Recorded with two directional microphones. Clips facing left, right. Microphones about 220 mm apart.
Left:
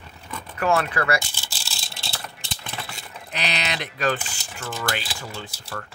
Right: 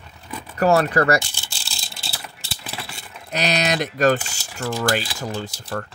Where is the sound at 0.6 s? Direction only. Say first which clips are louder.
Right 6 dB; 40° right (ahead or behind).